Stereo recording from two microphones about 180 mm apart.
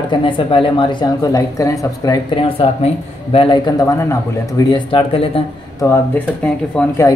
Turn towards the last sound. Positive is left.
turn(degrees=5)  # may be behind; listen again after turning